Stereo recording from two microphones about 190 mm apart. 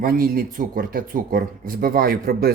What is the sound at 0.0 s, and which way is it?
Speech, 50° right (ahead or behind).